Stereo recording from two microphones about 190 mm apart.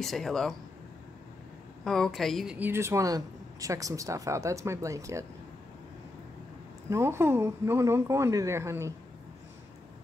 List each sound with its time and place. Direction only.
0.0 s speech: centre (ahead or behind)
1.9 s speech: centre (ahead or behind); by 5.2 s 15° right (ahead or behind)
6.9 s speech: 15° right (ahead or behind)